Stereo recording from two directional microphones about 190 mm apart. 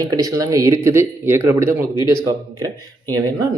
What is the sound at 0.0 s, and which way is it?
Speech, 20° right (ahead or behind).